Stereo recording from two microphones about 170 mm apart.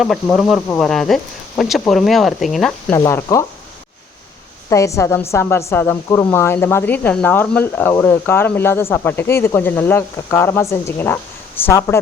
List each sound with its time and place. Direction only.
0.0 s speech: centre (ahead or behind)
3.0 s speech: 20° left (ahead or behind)
4.7 s speech: 20° left (ahead or behind)